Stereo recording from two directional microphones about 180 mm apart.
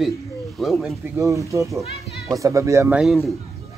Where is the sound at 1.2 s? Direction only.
15° right (ahead or behind).